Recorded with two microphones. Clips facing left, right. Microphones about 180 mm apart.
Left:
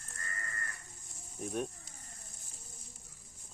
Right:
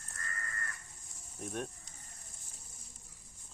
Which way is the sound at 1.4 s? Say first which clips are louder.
Left 3 dB; centre (ahead or behind).